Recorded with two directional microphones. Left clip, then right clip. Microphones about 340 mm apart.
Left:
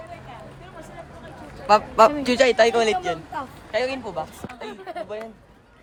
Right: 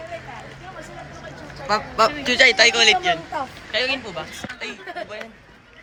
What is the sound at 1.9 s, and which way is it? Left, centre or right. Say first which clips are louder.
A man's voice: right 4 dB; left.